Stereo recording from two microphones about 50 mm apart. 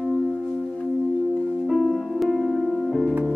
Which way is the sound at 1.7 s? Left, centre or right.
Centre.